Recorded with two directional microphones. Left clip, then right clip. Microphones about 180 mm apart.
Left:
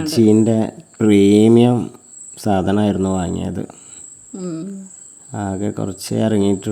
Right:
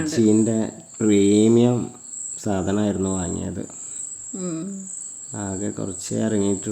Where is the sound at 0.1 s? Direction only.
35° left (ahead or behind).